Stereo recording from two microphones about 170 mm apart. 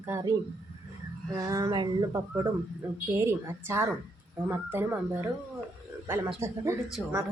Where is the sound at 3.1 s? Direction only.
15° right (ahead or behind).